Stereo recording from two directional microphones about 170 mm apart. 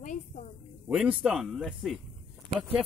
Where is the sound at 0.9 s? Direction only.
5° right (ahead or behind).